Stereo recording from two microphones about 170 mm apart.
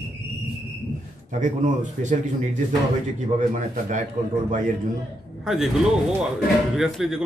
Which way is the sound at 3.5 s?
45° right (ahead or behind).